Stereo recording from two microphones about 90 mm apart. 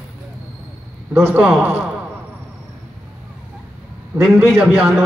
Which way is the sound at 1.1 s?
30° right (ahead or behind).